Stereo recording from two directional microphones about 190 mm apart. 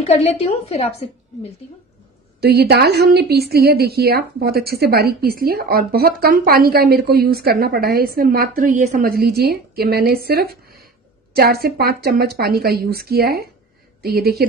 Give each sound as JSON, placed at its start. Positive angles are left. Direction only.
{"t": 0.0, "sound": "a woman's voice", "side_deg": 35}
{"t": 2.4, "sound": "a woman's voice", "side_deg": -60}